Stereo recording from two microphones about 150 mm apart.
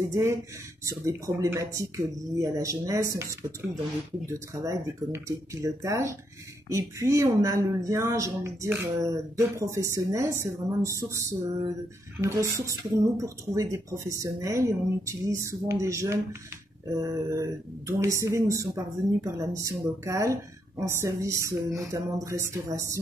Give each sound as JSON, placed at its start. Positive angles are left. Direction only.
{"t": 0.1, "sound": "speech", "side_deg": -20}